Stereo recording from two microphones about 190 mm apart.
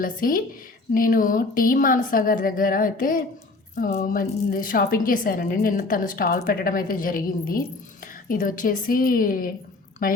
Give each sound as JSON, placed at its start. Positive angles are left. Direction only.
{"t": 0.0, "sound": "a woman's voice", "side_deg": 45}